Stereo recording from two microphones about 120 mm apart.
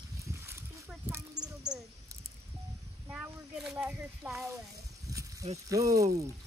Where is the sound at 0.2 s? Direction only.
20° right (ahead or behind).